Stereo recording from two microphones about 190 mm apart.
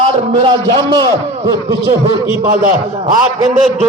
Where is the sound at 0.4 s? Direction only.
25° right (ahead or behind).